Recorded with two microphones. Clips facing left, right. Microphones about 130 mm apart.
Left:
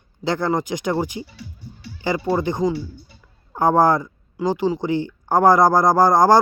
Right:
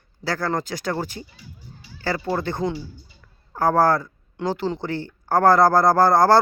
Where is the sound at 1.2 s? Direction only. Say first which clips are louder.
Left 6 dB; 70° left (ahead or behind).